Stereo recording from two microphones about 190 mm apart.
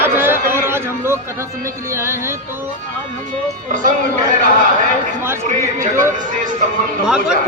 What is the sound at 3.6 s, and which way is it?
Speech, 45° right (ahead or behind).